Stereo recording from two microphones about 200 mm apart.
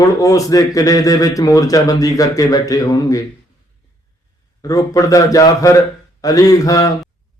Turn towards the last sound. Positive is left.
turn(degrees=15)  # may be behind; listen again after turning